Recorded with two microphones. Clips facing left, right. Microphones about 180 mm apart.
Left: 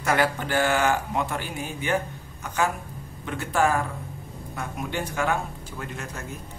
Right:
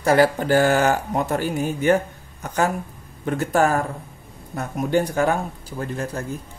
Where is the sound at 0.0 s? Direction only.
35° right (ahead or behind).